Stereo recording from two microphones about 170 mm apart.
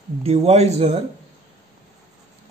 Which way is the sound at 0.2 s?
35° right (ahead or behind).